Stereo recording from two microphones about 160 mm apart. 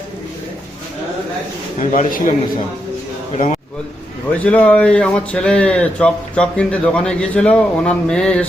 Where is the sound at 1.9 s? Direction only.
55° left (ahead or behind).